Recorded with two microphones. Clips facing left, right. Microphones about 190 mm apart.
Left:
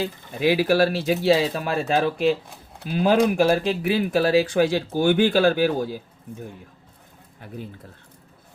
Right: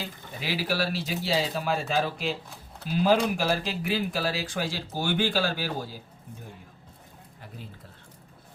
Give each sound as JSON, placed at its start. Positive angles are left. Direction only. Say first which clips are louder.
{"t": 0.3, "sound": "speech", "louder": "left 11 dB", "side_deg": 55}
{"t": 7.4, "sound": "speech", "louder": "left 8 dB", "side_deg": 55}